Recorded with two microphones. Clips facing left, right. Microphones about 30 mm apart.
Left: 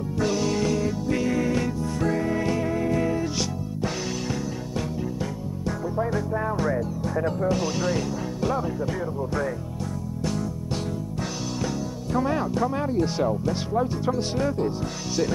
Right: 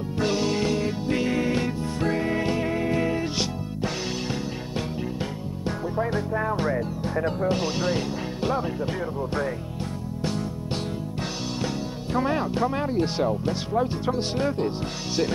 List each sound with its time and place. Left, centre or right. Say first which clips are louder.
0.2 s music: even; right
7.2 s speech: even; right
10.2 s music: even; right
11.6 s speech: even; right